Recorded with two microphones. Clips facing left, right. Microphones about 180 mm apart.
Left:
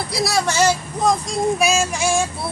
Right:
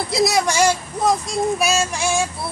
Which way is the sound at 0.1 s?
20° right (ahead or behind).